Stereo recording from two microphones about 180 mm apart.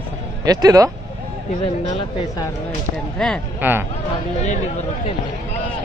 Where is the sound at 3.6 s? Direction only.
10° right (ahead or behind).